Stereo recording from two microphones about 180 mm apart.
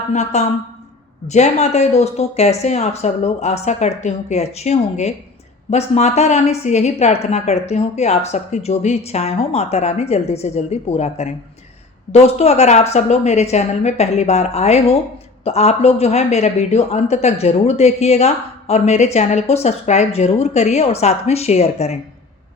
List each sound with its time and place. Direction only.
0.1 s a woman's voice: 40° left (ahead or behind)